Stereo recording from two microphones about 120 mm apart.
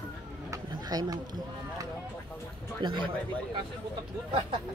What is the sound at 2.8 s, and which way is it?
Speech, 40° right (ahead or behind).